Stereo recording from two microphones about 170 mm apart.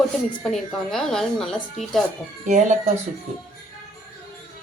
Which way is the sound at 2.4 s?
45° right (ahead or behind).